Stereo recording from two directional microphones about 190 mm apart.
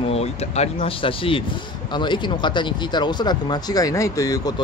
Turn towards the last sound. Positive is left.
turn(degrees=15)  # may be behind; listen again after turning